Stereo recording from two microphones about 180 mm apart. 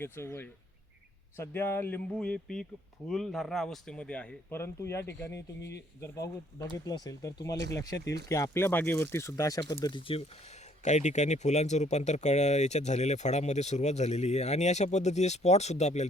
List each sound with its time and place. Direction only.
0.0 s speech: 10° left (ahead or behind); by 10.2 s 30° left (ahead or behind)
10.8 s speech: 40° left (ahead or behind)